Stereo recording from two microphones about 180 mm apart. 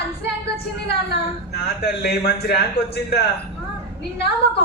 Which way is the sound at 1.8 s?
65° left (ahead or behind).